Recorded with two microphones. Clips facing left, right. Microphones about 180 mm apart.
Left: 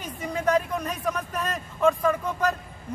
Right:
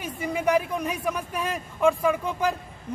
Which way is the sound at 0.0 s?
10° right (ahead or behind).